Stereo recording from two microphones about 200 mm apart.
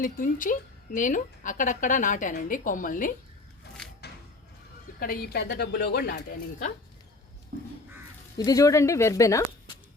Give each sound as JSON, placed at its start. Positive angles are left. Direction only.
{"t": 0.0, "sound": "a woman's voice", "side_deg": 40}
{"t": 4.9, "sound": "speech", "side_deg": 50}
{"t": 8.4, "sound": "speech", "side_deg": 15}